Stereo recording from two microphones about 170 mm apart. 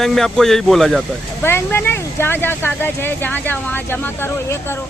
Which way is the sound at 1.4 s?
15° left (ahead or behind).